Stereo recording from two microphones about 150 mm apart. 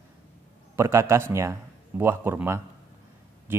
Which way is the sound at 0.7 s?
20° right (ahead or behind).